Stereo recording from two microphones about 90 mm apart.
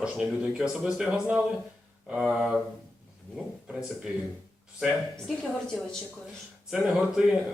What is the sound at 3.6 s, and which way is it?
Speech, 10° right (ahead or behind).